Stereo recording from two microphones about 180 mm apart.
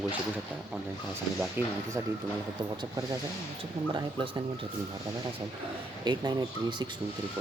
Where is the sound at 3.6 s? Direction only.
25° right (ahead or behind).